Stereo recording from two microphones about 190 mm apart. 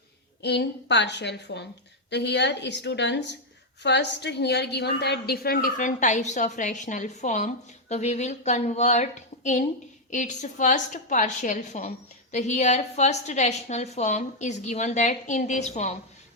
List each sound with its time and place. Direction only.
0.4 s a woman's voice: 65° left (ahead or behind); by 16.0 s 35° left (ahead or behind)